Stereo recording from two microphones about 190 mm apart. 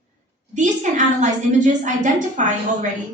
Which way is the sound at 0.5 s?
40° right (ahead or behind).